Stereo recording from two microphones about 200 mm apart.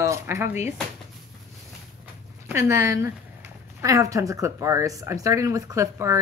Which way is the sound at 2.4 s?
15° right (ahead or behind).